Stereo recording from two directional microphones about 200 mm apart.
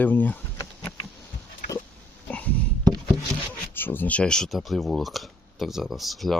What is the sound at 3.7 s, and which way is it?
Speech, 10° left (ahead or behind).